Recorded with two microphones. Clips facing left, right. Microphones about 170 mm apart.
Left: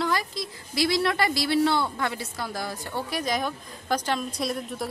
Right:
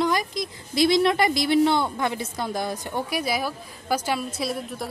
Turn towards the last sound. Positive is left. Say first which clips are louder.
# right 1 dB
turn(degrees=0)  # may be behind; listen again after turning